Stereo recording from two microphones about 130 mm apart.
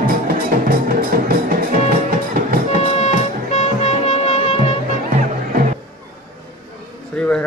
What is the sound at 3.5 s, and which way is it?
Music, 60° left (ahead or behind).